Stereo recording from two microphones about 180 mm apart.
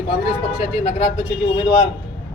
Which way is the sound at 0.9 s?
30° left (ahead or behind).